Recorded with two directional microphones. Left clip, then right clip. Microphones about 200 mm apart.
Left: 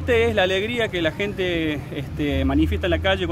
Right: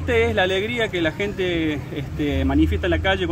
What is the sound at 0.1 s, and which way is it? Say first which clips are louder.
Speech: even; 25° left (ahead or behind).